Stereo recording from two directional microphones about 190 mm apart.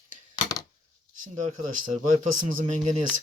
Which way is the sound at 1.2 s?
45° right (ahead or behind).